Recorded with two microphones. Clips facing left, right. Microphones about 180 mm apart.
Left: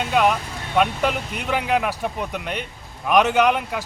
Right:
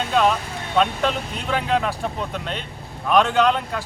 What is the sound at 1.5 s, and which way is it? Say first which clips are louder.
Speech: even; 10° left (ahead or behind).